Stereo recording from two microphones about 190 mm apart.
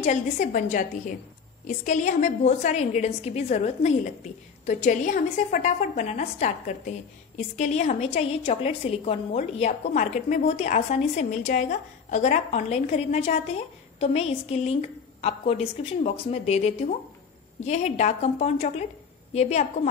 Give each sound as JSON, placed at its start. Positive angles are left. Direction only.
{"t": 0.0, "sound": "a woman's voice", "side_deg": 40}